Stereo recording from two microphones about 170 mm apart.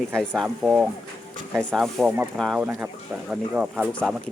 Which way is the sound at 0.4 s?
10° right (ahead or behind).